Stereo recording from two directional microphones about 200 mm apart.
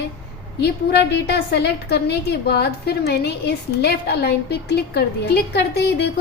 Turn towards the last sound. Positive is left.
turn(degrees=55)  # may be behind; listen again after turning